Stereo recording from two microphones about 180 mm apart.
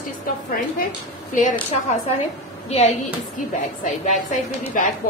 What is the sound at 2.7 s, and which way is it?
Speech, 35° left (ahead or behind).